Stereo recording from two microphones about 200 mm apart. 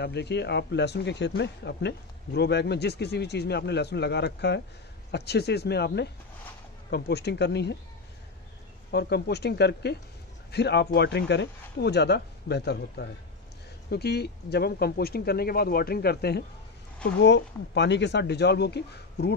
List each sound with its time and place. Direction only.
0.0 s speech: 55° left (ahead or behind)
8.9 s speech: 55° left (ahead or behind)